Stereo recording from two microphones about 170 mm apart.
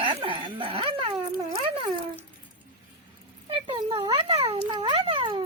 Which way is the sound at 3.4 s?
35° right (ahead or behind).